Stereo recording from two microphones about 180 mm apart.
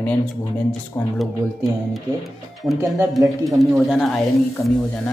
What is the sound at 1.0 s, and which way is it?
Speech, 15° left (ahead or behind).